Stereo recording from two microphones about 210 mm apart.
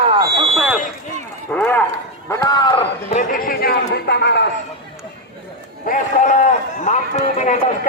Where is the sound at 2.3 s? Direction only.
15° left (ahead or behind).